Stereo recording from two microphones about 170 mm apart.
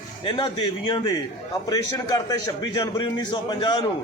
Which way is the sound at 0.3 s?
25° left (ahead or behind).